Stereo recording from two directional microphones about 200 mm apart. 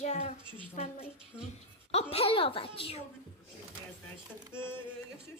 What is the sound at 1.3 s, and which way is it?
Speech, 10° left (ahead or behind).